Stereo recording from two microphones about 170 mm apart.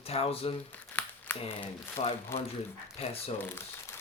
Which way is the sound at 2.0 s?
40° left (ahead or behind).